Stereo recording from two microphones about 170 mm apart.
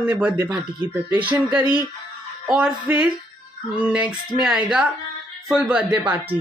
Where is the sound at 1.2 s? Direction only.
25° right (ahead or behind).